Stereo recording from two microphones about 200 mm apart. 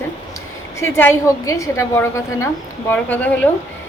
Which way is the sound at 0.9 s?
15° left (ahead or behind).